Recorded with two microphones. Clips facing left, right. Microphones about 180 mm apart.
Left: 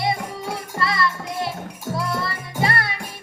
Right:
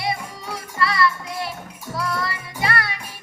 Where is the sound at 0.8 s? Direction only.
25° left (ahead or behind).